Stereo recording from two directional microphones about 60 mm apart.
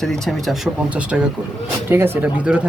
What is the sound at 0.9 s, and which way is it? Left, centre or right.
Speech, right.